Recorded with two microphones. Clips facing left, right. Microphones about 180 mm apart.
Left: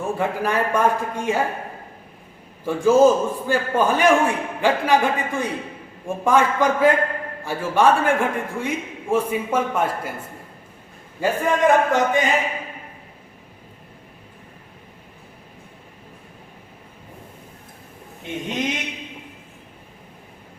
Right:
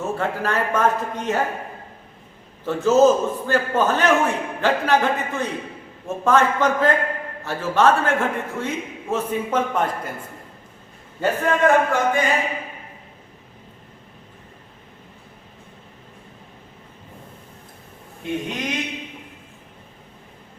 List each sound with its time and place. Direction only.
0.0 s a man's voice: 15° left (ahead or behind)
2.6 s a man's voice: 10° left (ahead or behind)
11.2 s a man's voice: 10° left (ahead or behind)
18.2 s speech: 20° left (ahead or behind)